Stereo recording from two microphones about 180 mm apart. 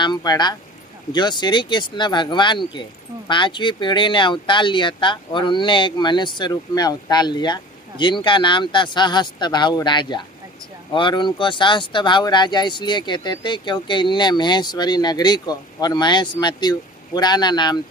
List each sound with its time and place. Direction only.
0.0 s speech: 25° left (ahead or behind)